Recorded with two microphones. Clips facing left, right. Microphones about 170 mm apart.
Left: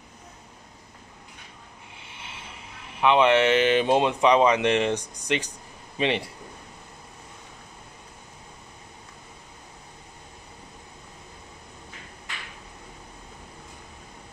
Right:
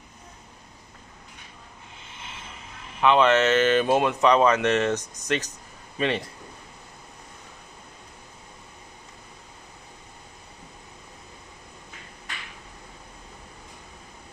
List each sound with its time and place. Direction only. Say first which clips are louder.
2.0 s speech: right 1 dB; 15° left (ahead or behind)